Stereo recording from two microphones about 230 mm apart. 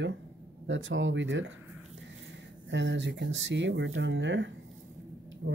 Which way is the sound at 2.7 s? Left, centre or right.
Right.